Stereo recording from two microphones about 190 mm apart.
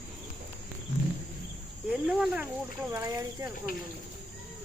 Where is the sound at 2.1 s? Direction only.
10° right (ahead or behind).